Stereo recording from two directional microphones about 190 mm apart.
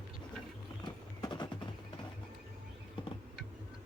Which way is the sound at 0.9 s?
25° left (ahead or behind).